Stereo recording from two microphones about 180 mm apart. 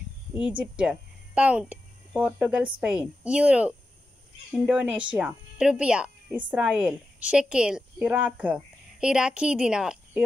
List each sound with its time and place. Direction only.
0.3 s a woman's voice: 10° right (ahead or behind)